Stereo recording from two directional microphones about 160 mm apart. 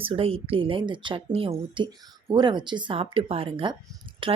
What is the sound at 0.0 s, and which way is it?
A woman's voice, 35° right (ahead or behind).